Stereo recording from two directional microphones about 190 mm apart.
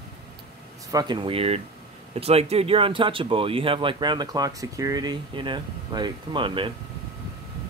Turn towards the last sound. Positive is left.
turn(degrees=-25)  # may be behind; listen again after turning